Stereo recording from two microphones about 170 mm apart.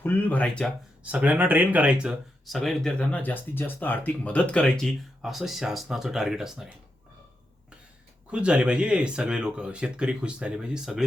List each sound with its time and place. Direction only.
0.0 s speech: 10° left (ahead or behind)
1.0 s speech: 10° right (ahead or behind)
8.3 s speech: 5° right (ahead or behind)